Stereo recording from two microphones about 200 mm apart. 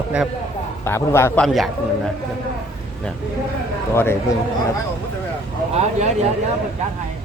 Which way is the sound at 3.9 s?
10° left (ahead or behind).